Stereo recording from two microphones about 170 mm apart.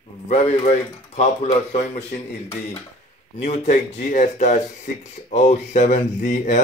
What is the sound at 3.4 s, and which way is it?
Speech, 45° left (ahead or behind).